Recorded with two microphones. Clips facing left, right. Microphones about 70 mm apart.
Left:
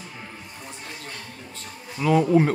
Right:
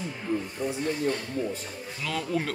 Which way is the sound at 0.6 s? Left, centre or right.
Centre.